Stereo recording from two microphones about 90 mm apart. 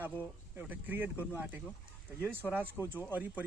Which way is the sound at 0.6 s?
20° right (ahead or behind).